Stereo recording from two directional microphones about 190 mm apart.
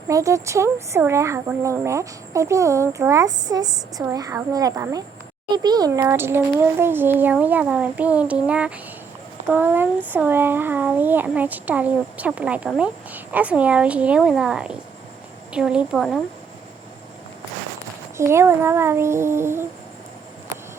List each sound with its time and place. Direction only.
0.1 s speech: 15° right (ahead or behind); by 16.2 s centre (ahead or behind)
18.2 s speech: 15° right (ahead or behind)